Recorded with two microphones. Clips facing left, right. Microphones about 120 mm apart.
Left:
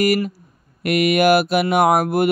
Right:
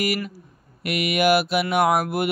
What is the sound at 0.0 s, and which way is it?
Mantra, 45° left (ahead or behind).